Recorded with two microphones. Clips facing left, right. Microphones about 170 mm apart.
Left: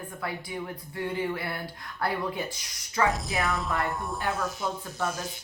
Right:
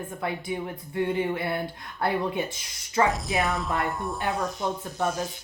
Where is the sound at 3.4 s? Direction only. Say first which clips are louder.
Right 1 dB; centre (ahead or behind).